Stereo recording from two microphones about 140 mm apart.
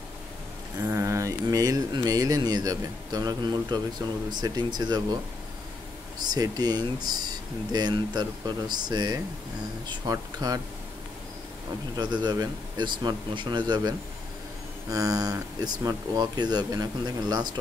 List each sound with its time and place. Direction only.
0.8 s speech: 20° right (ahead or behind)
6.1 s speech: 30° right (ahead or behind)
12.0 s speech: 30° right (ahead or behind)